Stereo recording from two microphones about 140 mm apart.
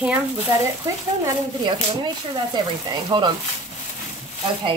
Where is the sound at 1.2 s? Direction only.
30° right (ahead or behind).